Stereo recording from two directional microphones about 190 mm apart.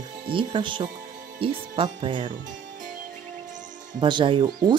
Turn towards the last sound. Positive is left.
turn(degrees=-20)  # may be behind; listen again after turning